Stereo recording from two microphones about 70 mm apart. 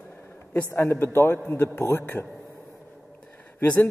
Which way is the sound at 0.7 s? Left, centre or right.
Left.